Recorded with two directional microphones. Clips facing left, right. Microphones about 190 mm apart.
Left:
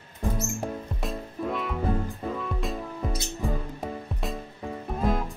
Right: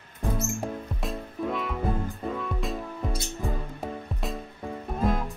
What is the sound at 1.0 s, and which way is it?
Music, centre (ahead or behind).